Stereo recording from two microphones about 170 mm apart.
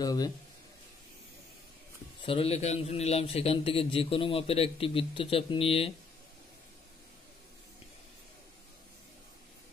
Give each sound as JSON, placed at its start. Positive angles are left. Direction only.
{"t": 0.0, "sound": "speech", "side_deg": 20}
{"t": 2.2, "sound": "a man's voice", "side_deg": 35}